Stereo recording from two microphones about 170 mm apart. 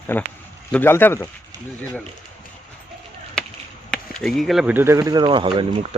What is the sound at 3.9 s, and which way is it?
Speech, centre (ahead or behind).